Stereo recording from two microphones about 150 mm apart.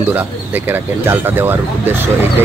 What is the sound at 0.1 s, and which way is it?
Speech, 15° right (ahead or behind).